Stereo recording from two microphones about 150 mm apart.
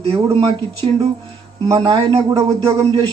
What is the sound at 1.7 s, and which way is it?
Speech, 30° right (ahead or behind).